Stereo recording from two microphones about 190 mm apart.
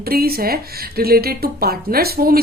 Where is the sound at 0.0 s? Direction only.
50° right (ahead or behind).